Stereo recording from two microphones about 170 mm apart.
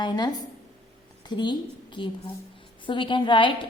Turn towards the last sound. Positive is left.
turn(degrees=30)  # may be behind; listen again after turning